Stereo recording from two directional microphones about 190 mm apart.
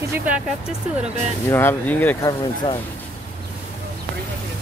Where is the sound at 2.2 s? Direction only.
25° left (ahead or behind).